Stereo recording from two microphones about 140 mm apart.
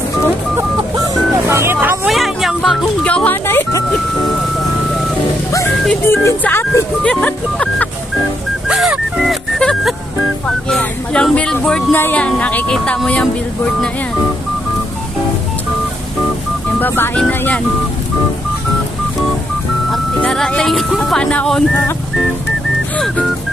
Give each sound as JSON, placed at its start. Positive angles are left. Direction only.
{"t": 0.9, "sound": "music", "side_deg": -25}
{"t": 2.0, "sound": "music", "side_deg": 0}
{"t": 5.9, "sound": "music", "side_deg": 15}
{"t": 8.6, "sound": "music", "side_deg": -5}
{"t": 10.4, "sound": "speech", "side_deg": 10}
{"t": 16.8, "sound": "speech", "side_deg": 15}
{"t": 19.9, "sound": "speech", "side_deg": 5}